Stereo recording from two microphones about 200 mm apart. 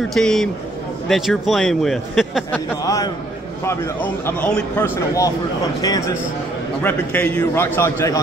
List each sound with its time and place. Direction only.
0.1 s a man's voice: centre (ahead or behind)
2.8 s a man's voice: 15° left (ahead or behind)